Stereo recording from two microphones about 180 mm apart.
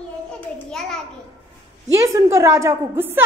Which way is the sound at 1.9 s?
15° right (ahead or behind).